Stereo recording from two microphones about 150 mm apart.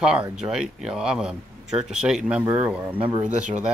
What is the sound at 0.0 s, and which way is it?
Speech, 5° right (ahead or behind).